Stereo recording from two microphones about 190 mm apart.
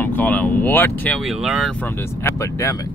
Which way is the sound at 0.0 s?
10° left (ahead or behind).